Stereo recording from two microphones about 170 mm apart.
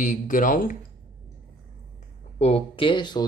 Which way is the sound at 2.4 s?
35° left (ahead or behind).